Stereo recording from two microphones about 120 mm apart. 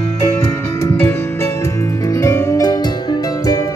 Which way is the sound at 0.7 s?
20° left (ahead or behind).